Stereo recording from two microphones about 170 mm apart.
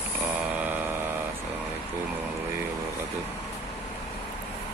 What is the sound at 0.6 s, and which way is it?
Vehicle, 10° right (ahead or behind).